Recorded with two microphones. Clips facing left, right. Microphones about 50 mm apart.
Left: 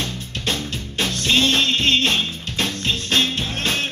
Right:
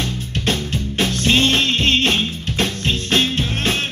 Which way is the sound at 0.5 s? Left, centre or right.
Right.